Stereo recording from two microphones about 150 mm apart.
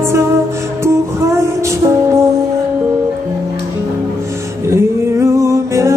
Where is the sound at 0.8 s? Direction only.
20° right (ahead or behind).